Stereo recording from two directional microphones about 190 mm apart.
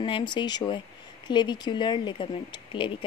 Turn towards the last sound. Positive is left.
turn(degrees=25)  # may be behind; listen again after turning